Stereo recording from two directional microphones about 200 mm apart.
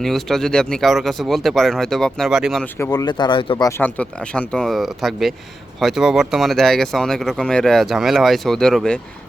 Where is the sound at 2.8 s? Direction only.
20° left (ahead or behind).